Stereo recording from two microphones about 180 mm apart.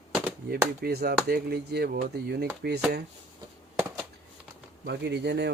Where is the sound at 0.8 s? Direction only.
60° right (ahead or behind).